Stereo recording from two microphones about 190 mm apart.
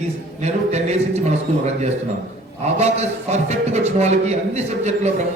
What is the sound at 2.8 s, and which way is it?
A man's voice, 35° right (ahead or behind).